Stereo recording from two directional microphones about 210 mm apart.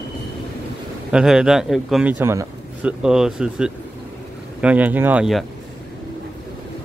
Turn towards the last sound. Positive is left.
turn(degrees=-5)  # may be behind; listen again after turning